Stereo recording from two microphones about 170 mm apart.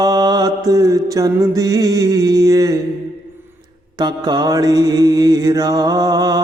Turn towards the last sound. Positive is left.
turn(degrees=-25)  # may be behind; listen again after turning